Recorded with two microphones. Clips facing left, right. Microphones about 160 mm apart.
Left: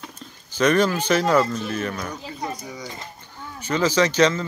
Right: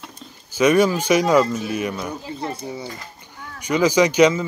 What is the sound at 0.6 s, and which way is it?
Speech, 10° right (ahead or behind).